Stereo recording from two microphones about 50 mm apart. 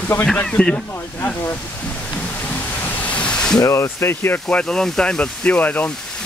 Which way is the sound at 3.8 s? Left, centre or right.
Left.